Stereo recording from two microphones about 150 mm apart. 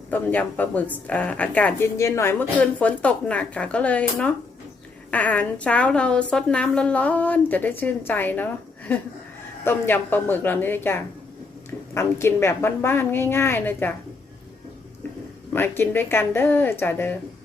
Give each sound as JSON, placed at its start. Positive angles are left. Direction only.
{"t": 0.1, "sound": "a woman's voice", "side_deg": 10}
{"t": 15.5, "sound": "a woman's voice", "side_deg": 15}